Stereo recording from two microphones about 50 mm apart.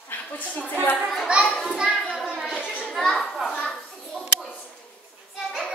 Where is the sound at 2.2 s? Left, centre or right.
Centre.